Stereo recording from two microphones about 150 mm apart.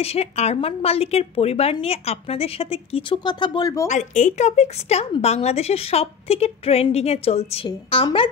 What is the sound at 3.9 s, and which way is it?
A woman's voice, 55° left (ahead or behind).